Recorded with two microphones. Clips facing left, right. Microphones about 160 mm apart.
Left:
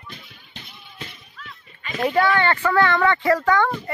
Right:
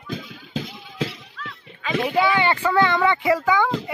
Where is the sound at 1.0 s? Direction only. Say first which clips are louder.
Right 12 dB; 90° right.